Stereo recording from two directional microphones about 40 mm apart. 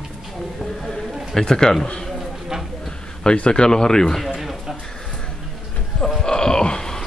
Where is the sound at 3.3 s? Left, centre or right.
Left.